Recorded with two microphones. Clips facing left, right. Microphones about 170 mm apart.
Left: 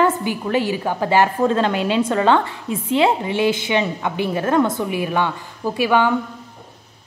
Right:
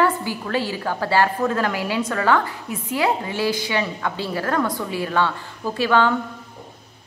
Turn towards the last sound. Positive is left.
turn(degrees=15)  # may be behind; listen again after turning